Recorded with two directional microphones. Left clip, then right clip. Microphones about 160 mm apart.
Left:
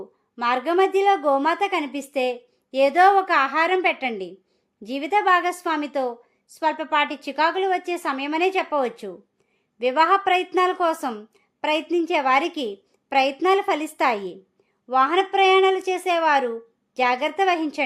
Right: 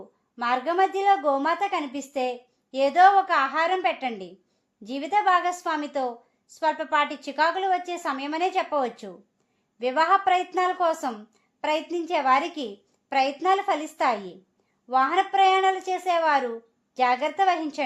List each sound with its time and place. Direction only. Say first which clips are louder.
0.3 s a woman's voice: left 3 dB; 30° left (ahead or behind)